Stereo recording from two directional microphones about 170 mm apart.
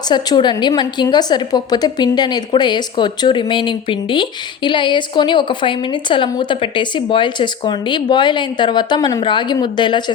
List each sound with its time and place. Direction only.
0.1 s a woman's voice: 25° left (ahead or behind)